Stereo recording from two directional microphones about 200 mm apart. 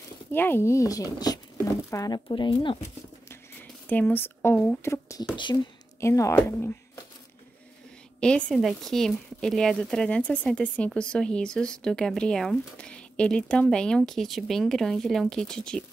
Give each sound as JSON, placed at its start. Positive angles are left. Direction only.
{"t": 0.3, "sound": "speech", "side_deg": 10}
{"t": 3.9, "sound": "speech", "side_deg": 10}
{"t": 8.2, "sound": "a woman's voice", "side_deg": 5}